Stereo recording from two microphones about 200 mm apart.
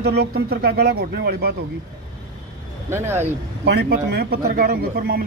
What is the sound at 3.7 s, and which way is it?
Speech, 55° right (ahead or behind).